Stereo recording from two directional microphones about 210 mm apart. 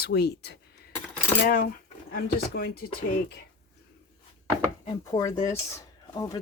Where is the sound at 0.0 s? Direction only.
50° left (ahead or behind).